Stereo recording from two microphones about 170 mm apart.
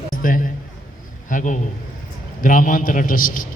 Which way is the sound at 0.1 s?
55° left (ahead or behind).